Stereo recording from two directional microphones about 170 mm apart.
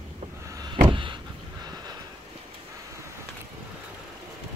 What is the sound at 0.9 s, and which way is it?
Vehicle, 30° right (ahead or behind).